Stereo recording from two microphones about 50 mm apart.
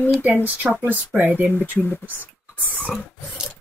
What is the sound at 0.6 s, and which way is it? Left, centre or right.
Speech, centre.